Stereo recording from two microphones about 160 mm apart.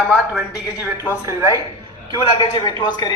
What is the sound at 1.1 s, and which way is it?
Speech, 15° right (ahead or behind).